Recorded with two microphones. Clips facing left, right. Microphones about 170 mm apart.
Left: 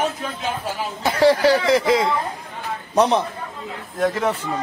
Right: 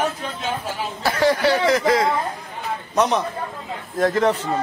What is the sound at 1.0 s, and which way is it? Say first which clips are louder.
A man's voice: left 3 dB; 30° left (ahead or behind).